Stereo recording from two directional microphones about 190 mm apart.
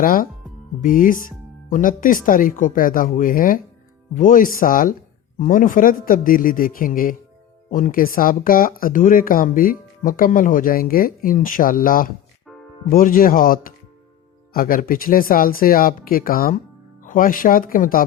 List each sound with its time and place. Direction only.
0.0 s speech: 45° left (ahead or behind)